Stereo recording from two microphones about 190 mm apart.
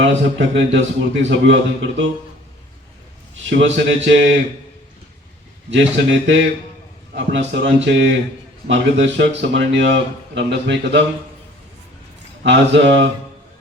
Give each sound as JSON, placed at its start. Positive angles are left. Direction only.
{"t": 0.0, "sound": "a man's voice", "side_deg": -70}
{"t": 3.5, "sound": "a man's voice", "side_deg": -70}
{"t": 5.7, "sound": "a man's voice", "side_deg": -75}
{"t": 12.4, "sound": "a man's voice", "side_deg": -70}